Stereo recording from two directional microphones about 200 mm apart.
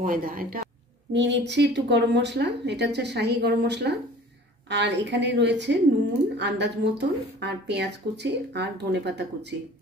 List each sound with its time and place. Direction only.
0.0 s a woman's voice: 45° right (ahead or behind)
1.1 s speech: 60° right (ahead or behind)